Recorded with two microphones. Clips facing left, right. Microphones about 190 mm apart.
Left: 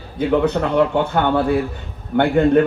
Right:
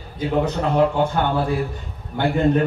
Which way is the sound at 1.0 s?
65° left (ahead or behind).